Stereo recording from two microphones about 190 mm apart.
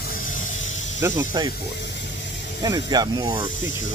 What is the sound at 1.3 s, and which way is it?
Speech, 20° right (ahead or behind).